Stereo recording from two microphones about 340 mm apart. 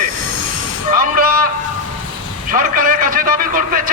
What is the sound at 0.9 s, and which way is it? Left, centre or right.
Speech, right.